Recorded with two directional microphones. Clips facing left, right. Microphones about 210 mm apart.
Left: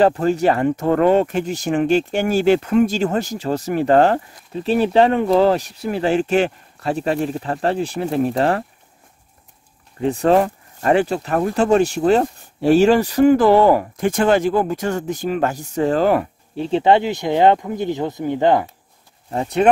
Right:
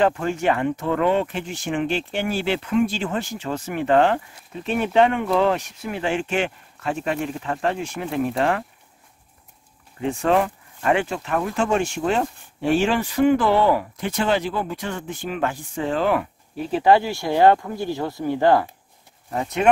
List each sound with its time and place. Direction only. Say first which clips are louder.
0.0 s speech: left 5 dB; 35° left (ahead or behind)
9.9 s speech: left 5 dB; 35° left (ahead or behind)
16.5 s speech: left 2 dB; 25° left (ahead or behind)
19.3 s speech: left 4 dB; 30° left (ahead or behind)